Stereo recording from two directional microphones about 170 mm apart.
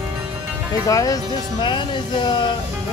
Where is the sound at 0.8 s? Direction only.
20° left (ahead or behind).